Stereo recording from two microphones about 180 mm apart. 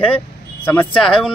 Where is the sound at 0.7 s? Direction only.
5° left (ahead or behind).